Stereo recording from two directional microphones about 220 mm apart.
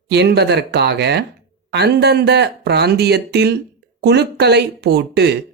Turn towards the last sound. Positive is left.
turn(degrees=-50)  # may be behind; listen again after turning